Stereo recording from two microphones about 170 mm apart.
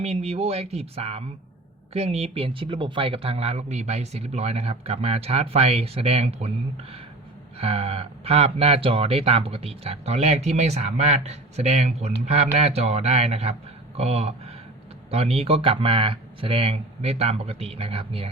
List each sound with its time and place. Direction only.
0.0 s speech: 35° right (ahead or behind)
7.6 s speech: 35° right (ahead or behind)